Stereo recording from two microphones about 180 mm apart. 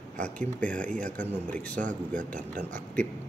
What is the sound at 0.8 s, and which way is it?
Speech, 45° right (ahead or behind).